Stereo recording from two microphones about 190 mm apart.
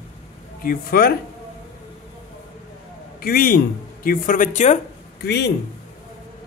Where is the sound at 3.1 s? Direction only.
50° left (ahead or behind).